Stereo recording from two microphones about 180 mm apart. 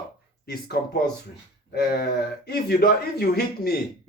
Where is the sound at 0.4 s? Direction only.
60° left (ahead or behind).